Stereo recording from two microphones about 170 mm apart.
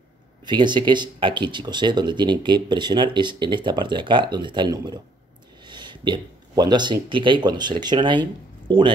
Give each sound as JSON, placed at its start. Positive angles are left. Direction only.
{"t": 0.5, "sound": "speech", "side_deg": -25}